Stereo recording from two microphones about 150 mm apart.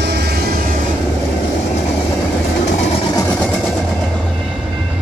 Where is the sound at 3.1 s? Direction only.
15° left (ahead or behind).